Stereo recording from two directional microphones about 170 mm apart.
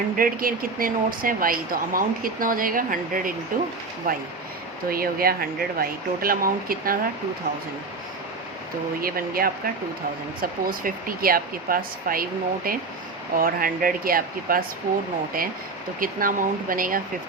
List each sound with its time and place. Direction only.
0.2 s a woman's voice: 55° right (ahead or behind)
9.0 s a woman's voice: 60° right (ahead or behind)